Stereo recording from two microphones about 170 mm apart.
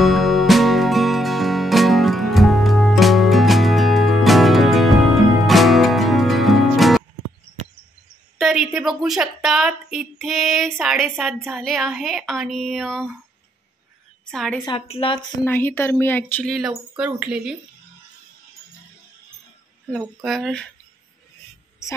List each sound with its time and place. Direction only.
0.0 s music: centre (ahead or behind)
8.4 s a woman's voice: centre (ahead or behind)
14.3 s a woman's voice: 5° left (ahead or behind)
14.9 s a woman's voice: 30° left (ahead or behind)
15.4 s speech: 10° left (ahead or behind)
16.5 s a woman's voice: 5° right (ahead or behind)
19.9 s a woman's voice: centre (ahead or behind)